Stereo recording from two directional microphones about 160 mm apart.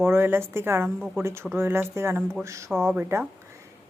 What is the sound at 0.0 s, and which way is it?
A woman's voice, 15° right (ahead or behind).